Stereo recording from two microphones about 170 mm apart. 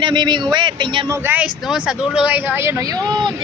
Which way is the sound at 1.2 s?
10° right (ahead or behind).